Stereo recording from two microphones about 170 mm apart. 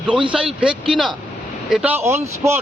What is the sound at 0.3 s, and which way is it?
Speech, 5° right (ahead or behind).